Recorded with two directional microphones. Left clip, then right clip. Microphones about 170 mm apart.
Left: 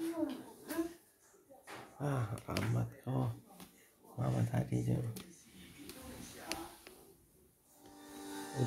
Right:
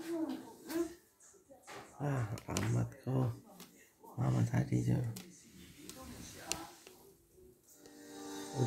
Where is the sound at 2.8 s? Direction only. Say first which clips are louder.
Right 2 dB; 15° right (ahead or behind).